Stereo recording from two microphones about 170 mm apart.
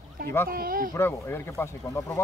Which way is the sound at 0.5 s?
60° right (ahead or behind).